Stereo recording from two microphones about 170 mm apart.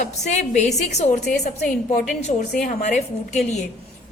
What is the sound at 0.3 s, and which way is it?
Speech, 45° left (ahead or behind).